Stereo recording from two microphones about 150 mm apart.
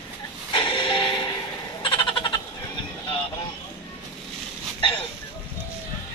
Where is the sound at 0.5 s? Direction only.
30° left (ahead or behind).